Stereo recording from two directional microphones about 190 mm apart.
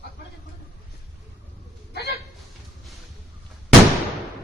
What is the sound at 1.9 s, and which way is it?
Hiccup, 60° left (ahead or behind).